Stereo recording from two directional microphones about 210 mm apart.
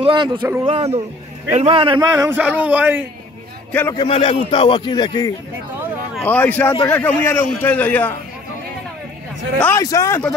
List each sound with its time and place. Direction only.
0.0 s a man's voice: 20° right (ahead or behind); by 3.0 s 5° right (ahead or behind)
3.7 s a man's voice: 10° left (ahead or behind)
4.0 s a man's voice: 25° left (ahead or behind)
6.2 s a man's voice: 10° left (ahead or behind)
9.6 s a man's voice: 15° left (ahead or behind)